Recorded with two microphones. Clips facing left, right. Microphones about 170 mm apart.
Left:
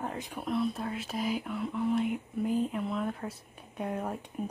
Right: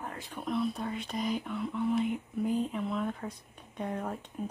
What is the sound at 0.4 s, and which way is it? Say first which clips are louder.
Speech: left 1 dB; centre (ahead or behind).